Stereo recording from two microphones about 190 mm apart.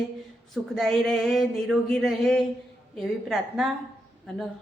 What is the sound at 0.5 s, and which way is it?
Speech, centre (ahead or behind).